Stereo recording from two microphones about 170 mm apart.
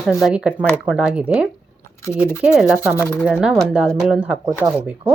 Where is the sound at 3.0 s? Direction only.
10° left (ahead or behind).